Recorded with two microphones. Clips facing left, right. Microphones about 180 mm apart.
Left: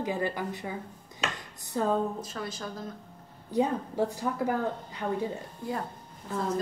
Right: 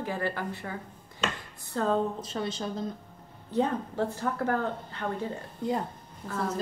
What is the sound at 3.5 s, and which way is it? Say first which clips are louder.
Speech: even; 15° left (ahead or behind).